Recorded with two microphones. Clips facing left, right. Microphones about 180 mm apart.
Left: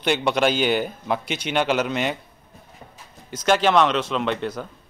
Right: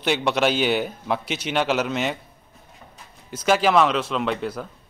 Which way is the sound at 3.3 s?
5° right (ahead or behind).